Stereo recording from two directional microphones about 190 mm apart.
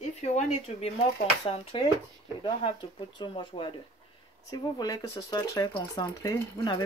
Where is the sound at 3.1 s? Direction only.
25° left (ahead or behind).